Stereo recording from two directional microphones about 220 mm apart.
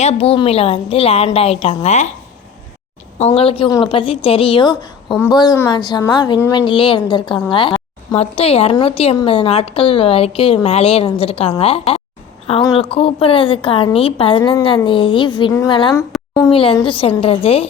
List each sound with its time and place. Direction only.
0.0 s speech: 30° left (ahead or behind)
3.2 s a woman's voice: 25° left (ahead or behind)